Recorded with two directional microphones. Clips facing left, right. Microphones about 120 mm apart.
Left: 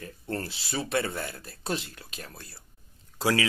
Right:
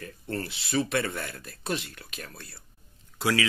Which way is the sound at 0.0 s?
30° left (ahead or behind).